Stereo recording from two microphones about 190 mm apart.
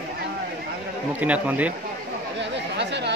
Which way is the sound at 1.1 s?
10° right (ahead or behind).